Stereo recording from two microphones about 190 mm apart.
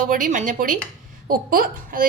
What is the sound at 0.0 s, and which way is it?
A woman's voice, 45° right (ahead or behind).